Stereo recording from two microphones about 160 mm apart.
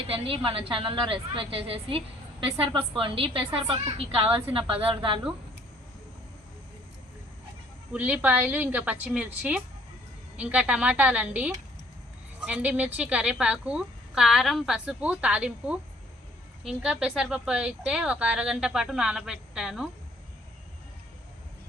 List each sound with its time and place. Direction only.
0.3 s a woman's voice: 35° right (ahead or behind)
7.9 s a woman's voice: 10° right (ahead or behind)